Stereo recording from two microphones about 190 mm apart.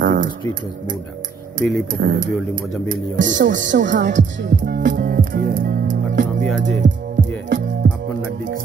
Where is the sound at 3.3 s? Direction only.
75° right (ahead or behind).